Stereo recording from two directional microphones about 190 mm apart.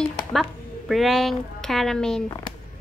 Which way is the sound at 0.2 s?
Centre (ahead or behind).